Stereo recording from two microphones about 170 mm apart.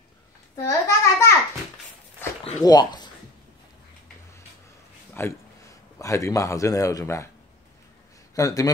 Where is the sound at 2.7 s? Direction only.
25° left (ahead or behind).